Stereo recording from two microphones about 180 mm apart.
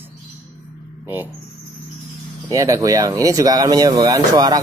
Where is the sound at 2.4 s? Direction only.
20° right (ahead or behind).